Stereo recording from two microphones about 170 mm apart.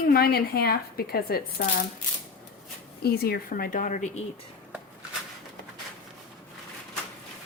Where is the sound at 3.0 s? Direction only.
65° left (ahead or behind); by 4.2 s 45° left (ahead or behind).